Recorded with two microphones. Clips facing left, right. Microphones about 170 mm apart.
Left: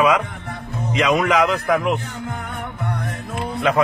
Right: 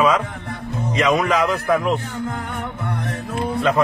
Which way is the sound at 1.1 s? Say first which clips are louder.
Left 1 dB; 20° left (ahead or behind).